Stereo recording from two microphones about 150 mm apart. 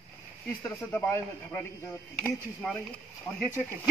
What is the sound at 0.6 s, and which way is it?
Speech, 15° left (ahead or behind).